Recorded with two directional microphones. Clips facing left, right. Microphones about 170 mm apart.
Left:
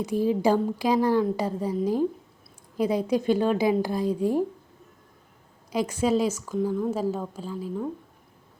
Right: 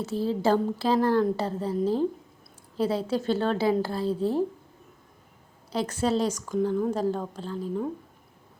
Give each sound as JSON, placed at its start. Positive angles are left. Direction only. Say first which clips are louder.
{"t": 0.0, "sound": "a woman's voice", "louder": "left 3 dB", "side_deg": 15}
{"t": 5.7, "sound": "a woman's voice", "louder": "left 2 dB", "side_deg": 10}